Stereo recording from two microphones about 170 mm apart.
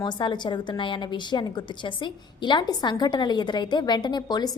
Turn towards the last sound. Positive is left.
turn(degrees=25)  # may be behind; listen again after turning